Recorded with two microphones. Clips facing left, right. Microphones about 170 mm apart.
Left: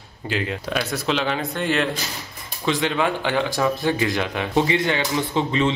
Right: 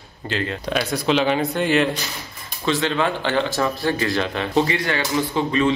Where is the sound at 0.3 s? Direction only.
10° left (ahead or behind).